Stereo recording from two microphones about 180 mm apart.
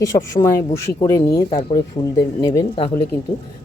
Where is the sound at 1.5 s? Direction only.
30° left (ahead or behind).